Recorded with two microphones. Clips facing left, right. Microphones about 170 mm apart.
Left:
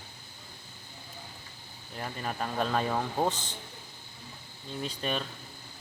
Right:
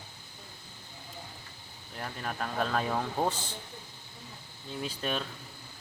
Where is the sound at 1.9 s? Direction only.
5° left (ahead or behind).